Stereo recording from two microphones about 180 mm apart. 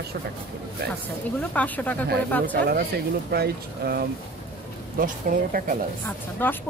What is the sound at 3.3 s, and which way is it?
Speech, 60° right (ahead or behind).